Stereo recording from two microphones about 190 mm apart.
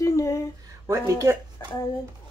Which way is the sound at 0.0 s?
15° left (ahead or behind).